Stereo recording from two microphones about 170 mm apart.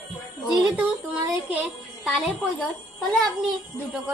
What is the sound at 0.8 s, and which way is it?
Speech, 10° right (ahead or behind).